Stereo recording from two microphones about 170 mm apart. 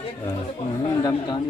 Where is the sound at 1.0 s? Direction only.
25° left (ahead or behind).